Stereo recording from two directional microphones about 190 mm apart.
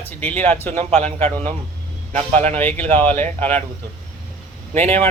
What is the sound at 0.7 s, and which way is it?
Speech, 35° right (ahead or behind).